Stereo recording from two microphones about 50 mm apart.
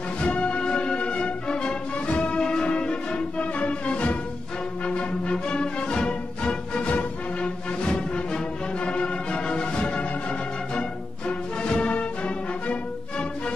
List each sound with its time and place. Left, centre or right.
0.2 s music: left